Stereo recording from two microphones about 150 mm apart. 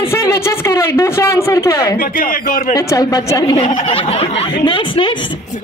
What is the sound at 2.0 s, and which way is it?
Speech, 70° left (ahead or behind).